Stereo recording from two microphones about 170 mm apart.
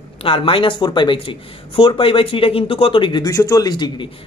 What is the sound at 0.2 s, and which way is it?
Speech, 30° left (ahead or behind).